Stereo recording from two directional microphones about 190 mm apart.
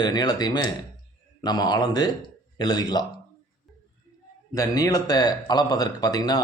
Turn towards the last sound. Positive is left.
turn(degrees=20)  # may be behind; listen again after turning